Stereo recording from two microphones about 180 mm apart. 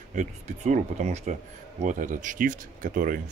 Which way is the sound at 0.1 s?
45° right (ahead or behind).